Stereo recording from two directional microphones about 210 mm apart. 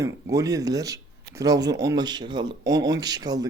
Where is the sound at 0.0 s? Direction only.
15° right (ahead or behind).